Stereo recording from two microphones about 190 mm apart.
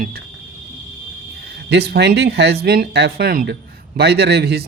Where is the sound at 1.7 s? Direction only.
60° right (ahead or behind).